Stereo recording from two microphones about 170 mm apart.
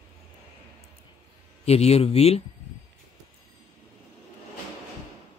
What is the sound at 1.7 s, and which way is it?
Speech, 35° left (ahead or behind).